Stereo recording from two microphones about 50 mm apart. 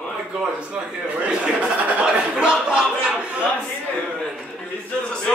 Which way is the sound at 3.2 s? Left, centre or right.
Right.